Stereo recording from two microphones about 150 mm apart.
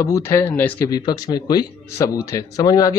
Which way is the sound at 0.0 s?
20° left (ahead or behind).